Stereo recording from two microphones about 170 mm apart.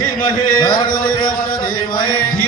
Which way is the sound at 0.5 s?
25° left (ahead or behind).